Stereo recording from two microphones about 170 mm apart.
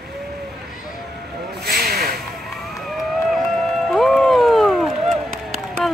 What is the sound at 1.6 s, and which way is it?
Vehicle, 65° right (ahead or behind).